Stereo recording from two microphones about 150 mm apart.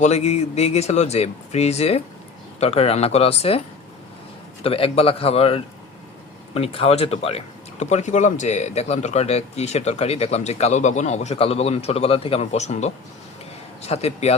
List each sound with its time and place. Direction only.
0.0 s speech: 45° left (ahead or behind)
4.6 s speech: 40° left (ahead or behind)